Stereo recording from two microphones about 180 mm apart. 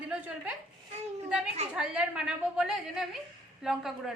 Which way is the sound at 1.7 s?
5° right (ahead or behind).